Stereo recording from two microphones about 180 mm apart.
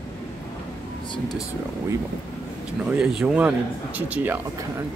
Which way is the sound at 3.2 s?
10° right (ahead or behind).